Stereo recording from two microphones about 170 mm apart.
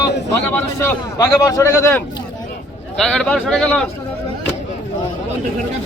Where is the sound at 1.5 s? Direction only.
20° left (ahead or behind).